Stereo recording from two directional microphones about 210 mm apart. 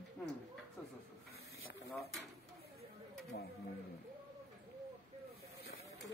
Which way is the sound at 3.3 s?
50° left (ahead or behind).